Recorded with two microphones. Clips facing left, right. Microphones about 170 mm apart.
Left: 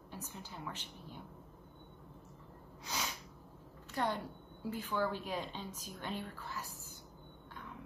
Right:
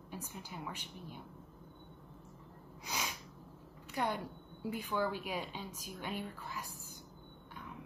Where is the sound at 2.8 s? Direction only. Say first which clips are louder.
Even; 10° right (ahead or behind).